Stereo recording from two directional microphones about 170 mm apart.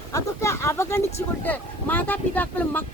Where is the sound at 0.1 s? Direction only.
15° left (ahead or behind).